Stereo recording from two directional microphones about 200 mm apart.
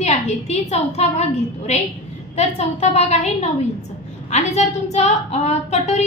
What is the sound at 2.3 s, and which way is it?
A woman's voice, 35° left (ahead or behind).